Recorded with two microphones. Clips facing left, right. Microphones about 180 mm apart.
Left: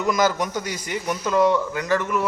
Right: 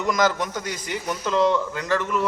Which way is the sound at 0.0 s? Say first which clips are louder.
Left 1 dB; 10° left (ahead or behind).